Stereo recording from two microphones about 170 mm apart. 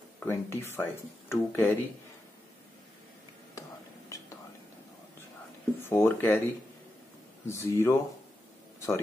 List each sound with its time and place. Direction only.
0.2 s speech: 15° left (ahead or behind)
5.9 s speech: 10° left (ahead or behind)
8.7 s a sound: 15° left (ahead or behind)